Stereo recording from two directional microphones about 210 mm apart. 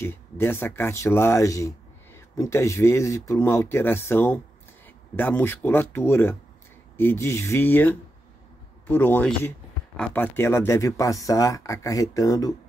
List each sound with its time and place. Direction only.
0.0 s speech: 10° left (ahead or behind)